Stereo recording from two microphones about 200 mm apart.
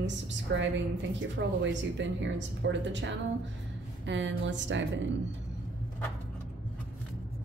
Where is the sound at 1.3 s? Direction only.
65° right (ahead or behind).